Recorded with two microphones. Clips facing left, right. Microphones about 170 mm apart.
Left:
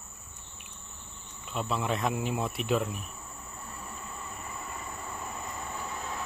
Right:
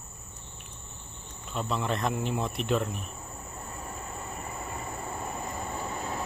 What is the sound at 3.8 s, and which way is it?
Vehicle, 40° right (ahead or behind).